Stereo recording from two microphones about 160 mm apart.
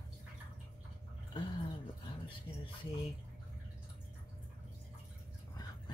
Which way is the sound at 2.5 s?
30° left (ahead or behind).